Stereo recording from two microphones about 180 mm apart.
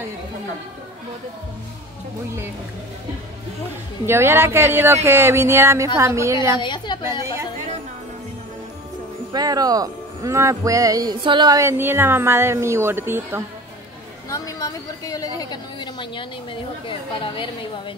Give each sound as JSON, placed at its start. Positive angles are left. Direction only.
{"t": 4.0, "sound": "speech", "side_deg": -15}
{"t": 6.6, "sound": "a woman's voice", "side_deg": 25}
{"t": 9.3, "sound": "speech", "side_deg": -20}
{"t": 14.3, "sound": "a woman's voice", "side_deg": 20}